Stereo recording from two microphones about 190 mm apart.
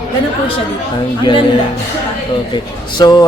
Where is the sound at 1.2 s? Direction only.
25° left (ahead or behind).